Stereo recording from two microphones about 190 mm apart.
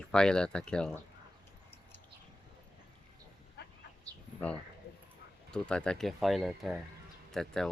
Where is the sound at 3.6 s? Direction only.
60° left (ahead or behind).